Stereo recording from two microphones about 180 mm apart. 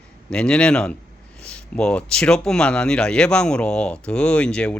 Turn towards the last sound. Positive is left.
turn(degrees=5)  # may be behind; listen again after turning